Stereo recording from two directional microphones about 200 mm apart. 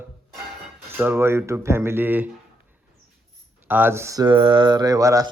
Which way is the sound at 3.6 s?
10° right (ahead or behind).